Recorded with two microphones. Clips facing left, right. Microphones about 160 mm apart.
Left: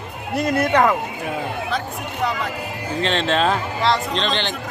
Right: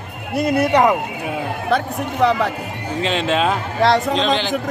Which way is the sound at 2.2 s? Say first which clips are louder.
Right 8 dB; 70° right (ahead or behind).